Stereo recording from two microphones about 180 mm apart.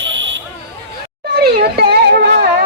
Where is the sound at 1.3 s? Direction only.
60° right (ahead or behind).